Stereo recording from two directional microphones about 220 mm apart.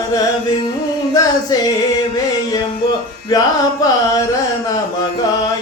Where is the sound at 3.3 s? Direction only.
15° left (ahead or behind).